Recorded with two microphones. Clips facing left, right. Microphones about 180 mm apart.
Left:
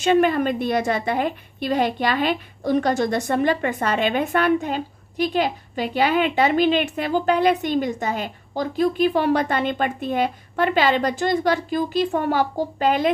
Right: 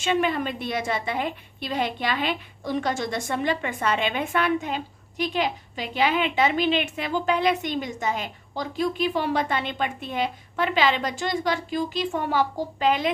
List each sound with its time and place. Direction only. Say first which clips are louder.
0.0 s a woman's voice: left 6 dB; 45° left (ahead or behind)
0.9 s a woman's voice: left 5 dB; 50° left (ahead or behind)
11.1 s a woman's voice: left 6 dB; 55° left (ahead or behind)